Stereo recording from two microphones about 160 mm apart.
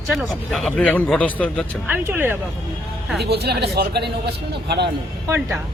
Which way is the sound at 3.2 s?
90° right.